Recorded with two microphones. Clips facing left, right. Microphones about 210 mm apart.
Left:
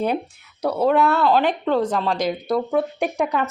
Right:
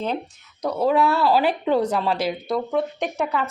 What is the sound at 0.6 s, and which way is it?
A woman's voice, 5° left (ahead or behind).